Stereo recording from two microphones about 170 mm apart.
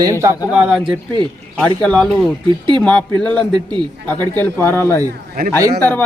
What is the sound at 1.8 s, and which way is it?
Speech, 5° left (ahead or behind).